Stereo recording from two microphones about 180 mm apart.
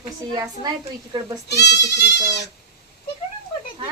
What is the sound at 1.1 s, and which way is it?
Speech, 25° right (ahead or behind).